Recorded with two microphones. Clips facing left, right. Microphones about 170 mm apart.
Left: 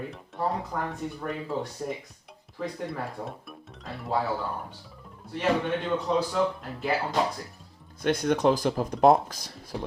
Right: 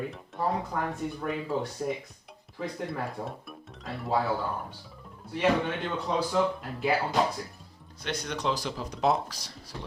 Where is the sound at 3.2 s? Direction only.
Centre (ahead or behind).